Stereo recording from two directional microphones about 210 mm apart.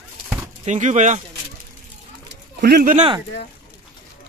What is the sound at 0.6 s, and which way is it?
Speech, 35° right (ahead or behind).